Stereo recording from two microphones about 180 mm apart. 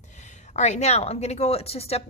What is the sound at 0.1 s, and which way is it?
Speech, 40° left (ahead or behind).